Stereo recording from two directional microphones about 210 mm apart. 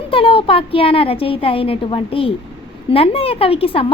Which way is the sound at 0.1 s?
25° left (ahead or behind).